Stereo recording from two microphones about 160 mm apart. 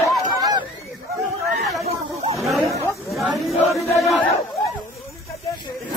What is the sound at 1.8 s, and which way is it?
Snake, 40° right (ahead or behind).